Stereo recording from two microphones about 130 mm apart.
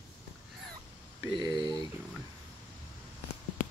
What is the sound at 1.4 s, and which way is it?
Speech, 30° right (ahead or behind).